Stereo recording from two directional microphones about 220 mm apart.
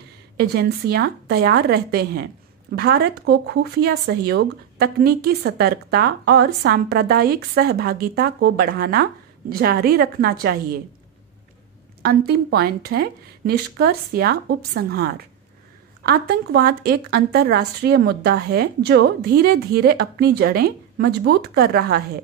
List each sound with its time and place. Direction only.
0.4 s speech: 45° right (ahead or behind)
12.0 s speech: 45° right (ahead or behind)